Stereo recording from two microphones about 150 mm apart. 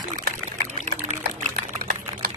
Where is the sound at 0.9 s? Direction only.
65° right (ahead or behind).